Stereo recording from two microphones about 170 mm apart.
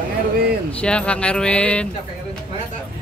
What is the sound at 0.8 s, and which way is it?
Speech, 5° left (ahead or behind).